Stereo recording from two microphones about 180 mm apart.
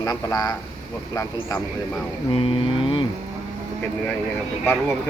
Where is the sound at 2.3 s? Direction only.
30° left (ahead or behind).